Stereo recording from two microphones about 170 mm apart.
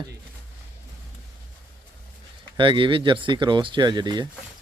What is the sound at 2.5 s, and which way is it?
Speech, 30° right (ahead or behind).